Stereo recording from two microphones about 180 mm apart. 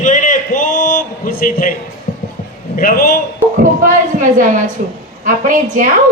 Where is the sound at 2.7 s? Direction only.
55° left (ahead or behind).